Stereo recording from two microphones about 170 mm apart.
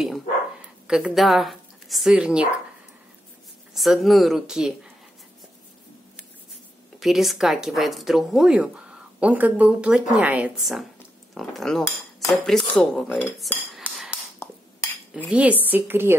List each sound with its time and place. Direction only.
0.8 s a woman's voice: 5° right (ahead or behind)
3.7 s speech: centre (ahead or behind)
7.0 s speech: centre (ahead or behind)
14.4 s cutlery: 15° left (ahead or behind)
15.6 s a woman's voice: 10° right (ahead or behind)